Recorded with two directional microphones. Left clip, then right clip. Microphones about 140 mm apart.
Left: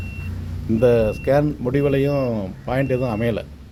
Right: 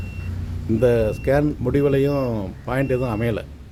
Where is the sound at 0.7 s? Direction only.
5° left (ahead or behind).